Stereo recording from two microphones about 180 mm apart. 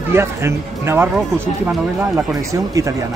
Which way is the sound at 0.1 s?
15° right (ahead or behind).